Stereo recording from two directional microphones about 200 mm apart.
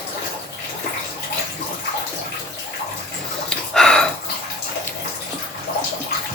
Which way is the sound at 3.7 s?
5° left (ahead or behind).